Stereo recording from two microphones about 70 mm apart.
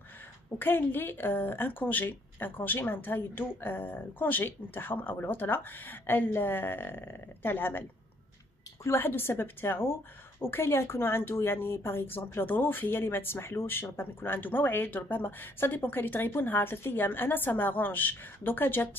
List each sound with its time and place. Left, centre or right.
0.6 s speech: left
8.9 s speech: left